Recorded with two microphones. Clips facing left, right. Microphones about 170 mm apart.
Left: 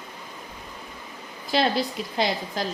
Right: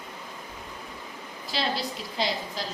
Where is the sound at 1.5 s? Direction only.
55° left (ahead or behind).